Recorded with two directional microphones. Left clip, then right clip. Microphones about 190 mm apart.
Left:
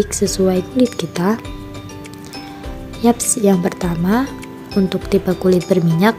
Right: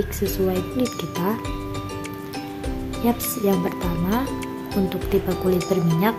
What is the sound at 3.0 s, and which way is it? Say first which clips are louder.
Speech: left 7 dB; 30° left (ahead or behind).